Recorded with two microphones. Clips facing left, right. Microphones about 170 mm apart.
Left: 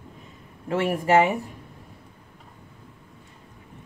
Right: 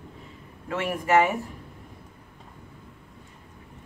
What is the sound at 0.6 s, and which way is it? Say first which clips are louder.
Speech: left 4 dB; 30° left (ahead or behind).